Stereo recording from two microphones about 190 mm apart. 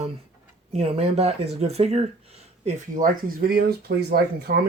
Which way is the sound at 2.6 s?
45° right (ahead or behind).